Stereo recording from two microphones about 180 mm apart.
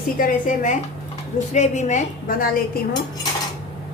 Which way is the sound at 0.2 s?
50° left (ahead or behind).